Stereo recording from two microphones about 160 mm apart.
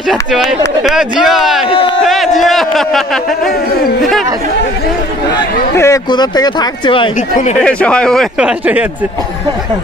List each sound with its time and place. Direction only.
0.1 s speech: centre (ahead or behind)
1.7 s speech: 35° left (ahead or behind)
2.0 s a man's voice: centre (ahead or behind)
5.3 s speech: 20° left (ahead or behind)
7.2 s speech: 50° left (ahead or behind)
7.6 s speech: 5° left (ahead or behind)